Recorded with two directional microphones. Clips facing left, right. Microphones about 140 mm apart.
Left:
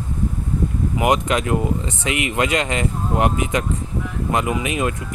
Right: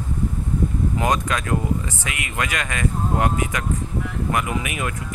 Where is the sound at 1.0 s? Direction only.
20° left (ahead or behind).